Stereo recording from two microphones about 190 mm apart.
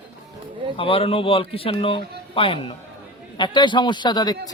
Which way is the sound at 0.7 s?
30° left (ahead or behind).